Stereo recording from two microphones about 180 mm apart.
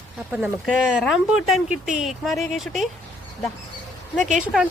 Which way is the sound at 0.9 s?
Centre (ahead or behind).